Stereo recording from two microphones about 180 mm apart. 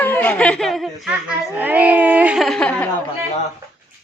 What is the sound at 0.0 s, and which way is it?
Speech, 10° left (ahead or behind).